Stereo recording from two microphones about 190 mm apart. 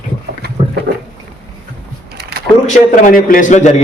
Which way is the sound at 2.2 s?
55° right (ahead or behind).